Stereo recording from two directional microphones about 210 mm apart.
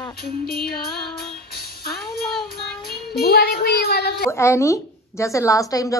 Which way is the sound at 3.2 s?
50° left (ahead or behind).